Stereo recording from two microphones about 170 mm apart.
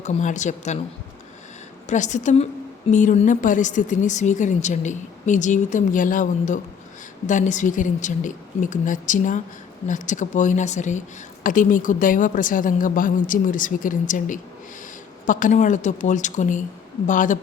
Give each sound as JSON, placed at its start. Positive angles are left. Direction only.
{"t": 0.0, "sound": "speech", "side_deg": 45}
{"t": 1.9, "sound": "speech", "side_deg": 45}